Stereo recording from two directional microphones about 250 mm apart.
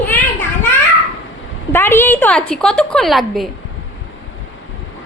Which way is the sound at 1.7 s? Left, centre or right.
Centre.